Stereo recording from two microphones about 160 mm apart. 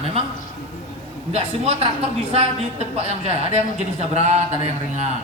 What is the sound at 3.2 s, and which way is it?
Speech, 40° right (ahead or behind).